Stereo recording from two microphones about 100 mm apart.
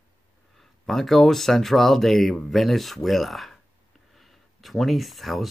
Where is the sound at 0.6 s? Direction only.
5° left (ahead or behind).